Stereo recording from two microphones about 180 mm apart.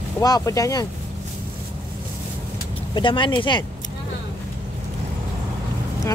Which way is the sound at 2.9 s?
25° left (ahead or behind).